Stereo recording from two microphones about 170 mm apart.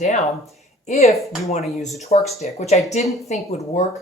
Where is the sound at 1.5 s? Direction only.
40° left (ahead or behind).